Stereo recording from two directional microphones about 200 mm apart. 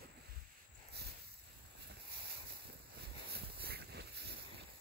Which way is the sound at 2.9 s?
50° right (ahead or behind).